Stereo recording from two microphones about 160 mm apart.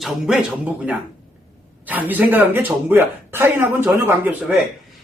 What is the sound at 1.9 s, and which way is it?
Speech, 10° right (ahead or behind).